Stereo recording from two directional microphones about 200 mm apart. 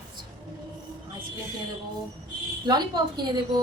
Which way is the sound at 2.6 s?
20° right (ahead or behind).